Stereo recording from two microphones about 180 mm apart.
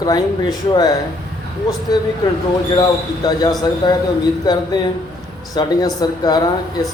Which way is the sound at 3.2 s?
20° left (ahead or behind).